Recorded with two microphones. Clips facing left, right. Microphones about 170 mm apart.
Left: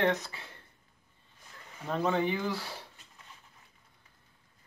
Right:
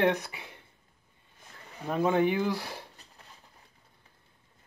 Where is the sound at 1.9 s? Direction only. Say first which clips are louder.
Right 4 dB; 10° right (ahead or behind).